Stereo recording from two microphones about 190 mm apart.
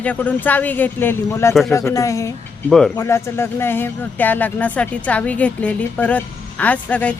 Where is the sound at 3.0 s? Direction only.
15° left (ahead or behind).